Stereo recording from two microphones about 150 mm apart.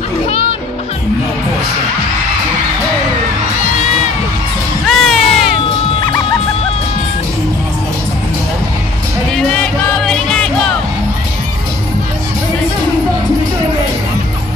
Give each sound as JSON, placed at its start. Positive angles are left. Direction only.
{"t": 0.3, "sound": "music", "side_deg": 40}
{"t": 4.8, "sound": "music", "side_deg": 0}
{"t": 9.3, "sound": "music", "side_deg": 5}